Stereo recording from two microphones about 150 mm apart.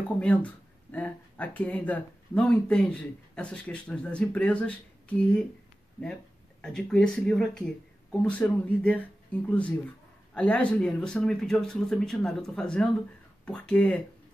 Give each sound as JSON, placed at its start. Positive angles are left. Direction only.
{"t": 0.2, "sound": "speech", "side_deg": 10}
{"t": 6.6, "sound": "speech", "side_deg": 5}